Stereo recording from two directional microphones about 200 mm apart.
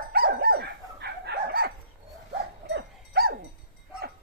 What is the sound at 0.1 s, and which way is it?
Dog, 50° right (ahead or behind).